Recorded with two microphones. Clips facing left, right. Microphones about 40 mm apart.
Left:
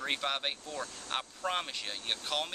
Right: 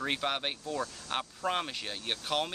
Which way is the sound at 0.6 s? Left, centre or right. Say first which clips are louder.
Right 5 dB; right.